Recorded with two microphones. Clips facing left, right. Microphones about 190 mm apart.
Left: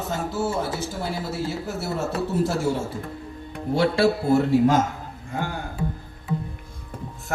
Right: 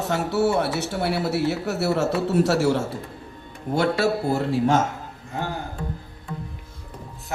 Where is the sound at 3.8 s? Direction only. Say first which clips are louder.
Left 1 dB; 40° right (ahead or behind).